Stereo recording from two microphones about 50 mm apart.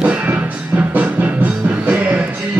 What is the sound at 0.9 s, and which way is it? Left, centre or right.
Music, right.